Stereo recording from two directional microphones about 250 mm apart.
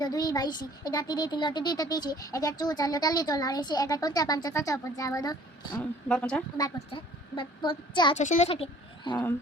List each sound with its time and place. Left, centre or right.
0.0 s speech: centre
6.1 s a woman's voice: centre
6.6 s a woman's voice: centre